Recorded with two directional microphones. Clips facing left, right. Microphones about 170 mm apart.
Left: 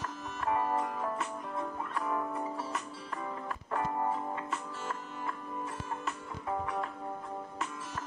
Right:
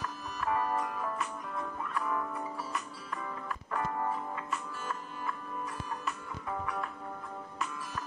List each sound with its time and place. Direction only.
0.4 s music: 25° left (ahead or behind)
6.6 s music: 25° left (ahead or behind)